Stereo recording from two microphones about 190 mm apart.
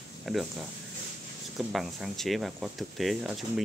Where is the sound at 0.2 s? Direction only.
Centre (ahead or behind).